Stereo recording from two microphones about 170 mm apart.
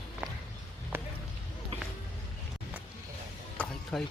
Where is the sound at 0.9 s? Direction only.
15° right (ahead or behind).